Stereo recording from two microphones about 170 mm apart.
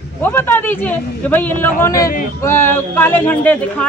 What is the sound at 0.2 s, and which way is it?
Speech, 15° left (ahead or behind).